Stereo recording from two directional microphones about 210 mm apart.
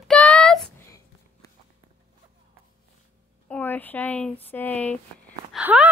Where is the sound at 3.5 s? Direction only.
10° left (ahead or behind).